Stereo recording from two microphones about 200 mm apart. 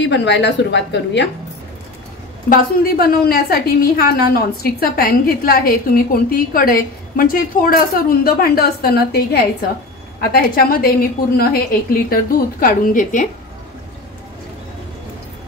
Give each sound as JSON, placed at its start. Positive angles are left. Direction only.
{"t": 0.0, "sound": "a woman's voice", "side_deg": 60}
{"t": 2.5, "sound": "a woman's voice", "side_deg": 50}